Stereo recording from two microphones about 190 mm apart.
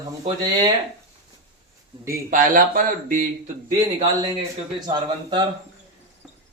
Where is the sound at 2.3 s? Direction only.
45° right (ahead or behind).